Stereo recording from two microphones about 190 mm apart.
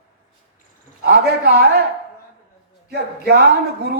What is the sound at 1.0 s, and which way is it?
Speech, 55° right (ahead or behind).